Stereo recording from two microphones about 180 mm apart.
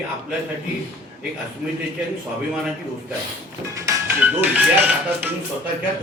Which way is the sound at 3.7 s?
15° right (ahead or behind).